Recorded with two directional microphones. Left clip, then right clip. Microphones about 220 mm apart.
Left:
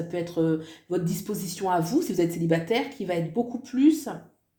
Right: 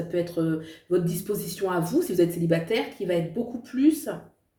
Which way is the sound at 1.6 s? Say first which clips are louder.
Left 2 dB; 35° left (ahead or behind).